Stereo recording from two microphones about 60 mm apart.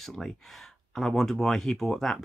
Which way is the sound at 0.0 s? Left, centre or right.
Centre.